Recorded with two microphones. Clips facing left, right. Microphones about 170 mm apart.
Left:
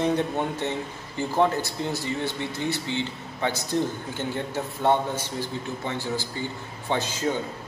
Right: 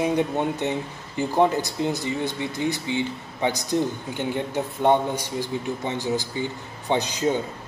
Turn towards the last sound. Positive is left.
turn(degrees=-15)  # may be behind; listen again after turning